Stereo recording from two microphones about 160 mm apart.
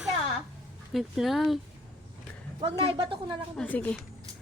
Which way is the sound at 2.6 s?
30° right (ahead or behind).